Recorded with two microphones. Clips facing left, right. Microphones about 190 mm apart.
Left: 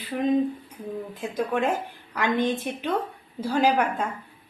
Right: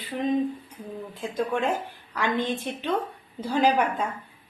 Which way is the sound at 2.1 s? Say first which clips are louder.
Left 2 dB; 15° left (ahead or behind).